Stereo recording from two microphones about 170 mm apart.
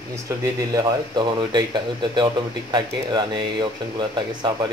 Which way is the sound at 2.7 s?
25° right (ahead or behind).